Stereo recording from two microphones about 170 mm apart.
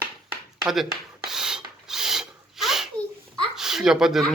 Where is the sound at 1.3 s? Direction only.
5° right (ahead or behind).